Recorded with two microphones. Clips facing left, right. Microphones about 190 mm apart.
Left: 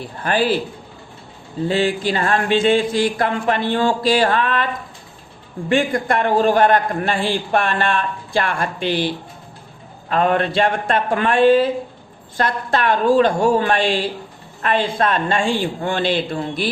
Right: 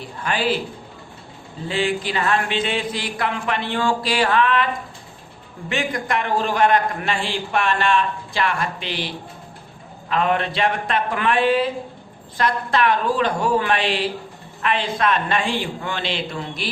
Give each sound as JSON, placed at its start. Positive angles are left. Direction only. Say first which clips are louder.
{"t": 0.2, "sound": "a man's voice", "louder": "left 5 dB", "side_deg": 50}
{"t": 1.6, "sound": "a man's voice", "louder": "left 4 dB", "side_deg": 40}
{"t": 6.1, "sound": "a man's voice", "louder": "left 6 dB", "side_deg": 50}
{"t": 10.1, "sound": "a man's voice", "louder": "left 3 dB", "side_deg": 45}
{"t": 15.9, "sound": "a man's voice", "louder": "left 9 dB", "side_deg": 50}